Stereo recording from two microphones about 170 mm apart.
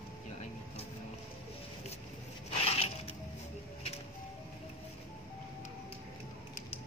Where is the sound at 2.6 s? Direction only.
35° left (ahead or behind).